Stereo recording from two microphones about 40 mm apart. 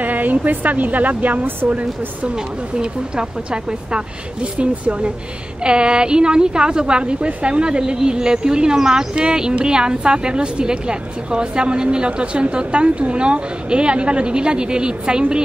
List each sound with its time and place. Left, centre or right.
0.0 s a woman's voice: right
2.3 s a woman's voice: right